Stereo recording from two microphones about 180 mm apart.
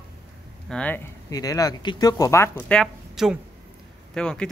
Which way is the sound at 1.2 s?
20° left (ahead or behind).